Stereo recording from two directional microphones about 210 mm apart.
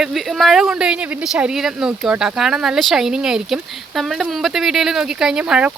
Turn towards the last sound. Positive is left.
turn(degrees=-5)  # may be behind; listen again after turning